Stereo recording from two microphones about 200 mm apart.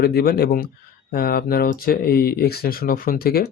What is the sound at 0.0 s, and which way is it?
Speech, 50° left (ahead or behind).